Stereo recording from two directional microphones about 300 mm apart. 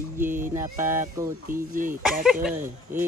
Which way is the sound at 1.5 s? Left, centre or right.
Right.